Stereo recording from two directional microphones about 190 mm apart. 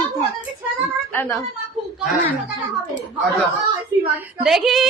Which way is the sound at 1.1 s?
10° left (ahead or behind).